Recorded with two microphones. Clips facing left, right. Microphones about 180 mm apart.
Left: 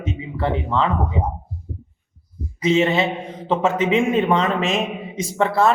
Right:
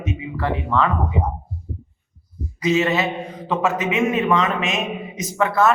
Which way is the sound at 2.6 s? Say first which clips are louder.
Left 1 dB; 25° left (ahead or behind).